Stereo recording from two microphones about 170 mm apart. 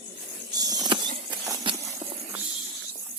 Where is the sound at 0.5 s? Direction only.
20° right (ahead or behind).